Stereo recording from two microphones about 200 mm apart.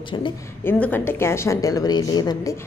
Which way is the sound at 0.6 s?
10° left (ahead or behind).